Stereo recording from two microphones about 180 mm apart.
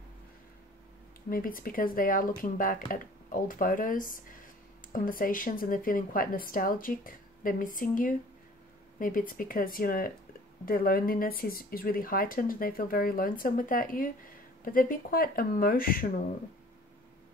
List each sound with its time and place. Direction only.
1.3 s speech: 50° left (ahead or behind)